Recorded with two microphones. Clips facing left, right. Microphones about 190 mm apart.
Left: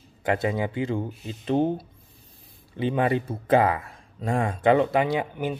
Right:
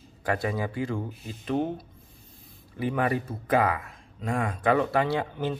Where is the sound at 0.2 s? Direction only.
20° left (ahead or behind).